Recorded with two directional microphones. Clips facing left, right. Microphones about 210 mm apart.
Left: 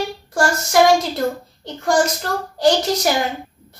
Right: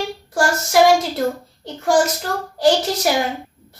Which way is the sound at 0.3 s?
5° right (ahead or behind).